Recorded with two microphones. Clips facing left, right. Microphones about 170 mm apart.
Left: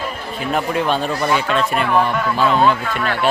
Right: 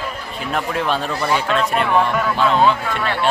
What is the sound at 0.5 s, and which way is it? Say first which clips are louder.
Speech: left 2 dB; centre (ahead or behind).